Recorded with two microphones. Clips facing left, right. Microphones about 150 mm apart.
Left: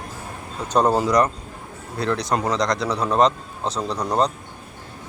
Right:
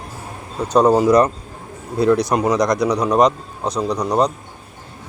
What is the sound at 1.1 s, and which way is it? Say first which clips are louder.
A man's voice: right 5 dB; 25° right (ahead or behind).